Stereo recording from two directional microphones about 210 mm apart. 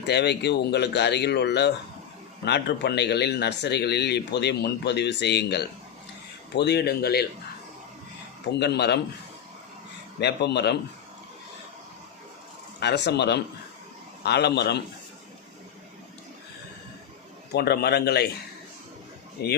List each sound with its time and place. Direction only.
0.1 s speech: 55° left (ahead or behind)
8.5 s speech: 50° left (ahead or behind)
10.2 s speech: 55° left (ahead or behind)
12.8 s speech: 55° left (ahead or behind)
17.5 s speech: 50° left (ahead or behind)
19.4 s speech: 50° left (ahead or behind)